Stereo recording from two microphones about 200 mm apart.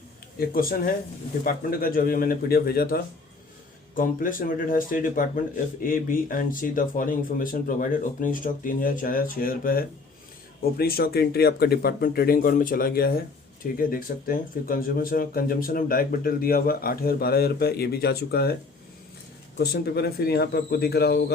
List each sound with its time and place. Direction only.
0.3 s speech: 45° left (ahead or behind)
19.5 s speech: 50° left (ahead or behind)